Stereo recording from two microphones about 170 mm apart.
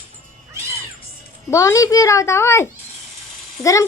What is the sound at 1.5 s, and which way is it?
A child's voice, 20° left (ahead or behind).